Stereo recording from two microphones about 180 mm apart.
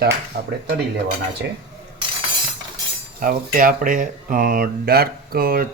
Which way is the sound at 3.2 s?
50° right (ahead or behind).